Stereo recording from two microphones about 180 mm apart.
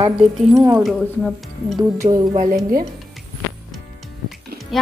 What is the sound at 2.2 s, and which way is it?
Speech, 35° right (ahead or behind).